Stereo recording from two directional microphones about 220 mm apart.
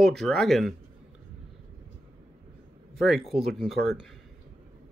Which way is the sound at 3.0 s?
Centre (ahead or behind).